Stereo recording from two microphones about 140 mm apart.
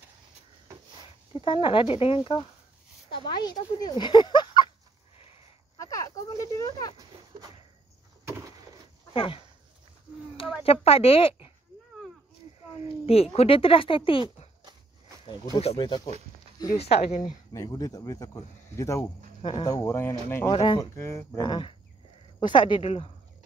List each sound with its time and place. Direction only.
1.4 s speech: 40° left (ahead or behind)
5.8 s a sound: 25° left (ahead or behind)
9.1 s speech: 40° left (ahead or behind)
10.6 s speech: 45° left (ahead or behind)
12.8 s speech: 45° left (ahead or behind)
15.6 s speech: 40° left (ahead or behind)
17.2 s speech: 25° left (ahead or behind)
19.4 s speech: 35° left (ahead or behind)
20.6 s speech: 30° left (ahead or behind)
20.9 s speech: 20° left (ahead or behind)
21.5 s speech: 35° left (ahead or behind)